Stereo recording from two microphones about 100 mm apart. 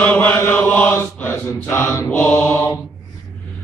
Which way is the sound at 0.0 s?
15° left (ahead or behind).